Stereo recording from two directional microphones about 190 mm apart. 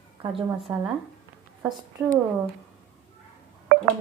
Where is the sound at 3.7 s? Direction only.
50° right (ahead or behind).